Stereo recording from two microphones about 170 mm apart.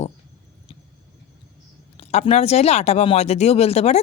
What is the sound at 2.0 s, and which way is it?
Speech, 35° left (ahead or behind).